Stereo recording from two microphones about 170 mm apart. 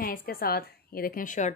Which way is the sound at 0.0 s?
55° left (ahead or behind).